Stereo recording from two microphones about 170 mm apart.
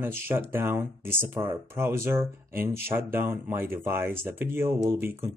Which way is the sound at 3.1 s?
15° right (ahead or behind).